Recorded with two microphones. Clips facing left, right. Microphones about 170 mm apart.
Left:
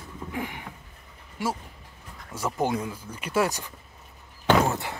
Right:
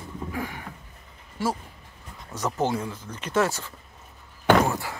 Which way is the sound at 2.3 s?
10° left (ahead or behind).